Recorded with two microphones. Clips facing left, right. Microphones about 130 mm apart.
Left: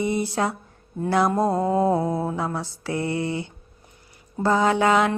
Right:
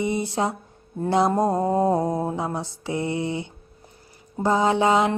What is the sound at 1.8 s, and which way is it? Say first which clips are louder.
Mantra: even; 40° right (ahead or behind).